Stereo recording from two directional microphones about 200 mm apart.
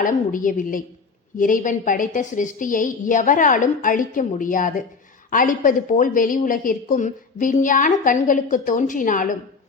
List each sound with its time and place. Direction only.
0.0 s a woman's voice: 40° left (ahead or behind)